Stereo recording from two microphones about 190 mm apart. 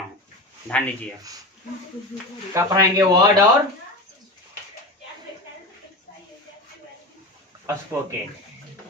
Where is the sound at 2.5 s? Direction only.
15° right (ahead or behind).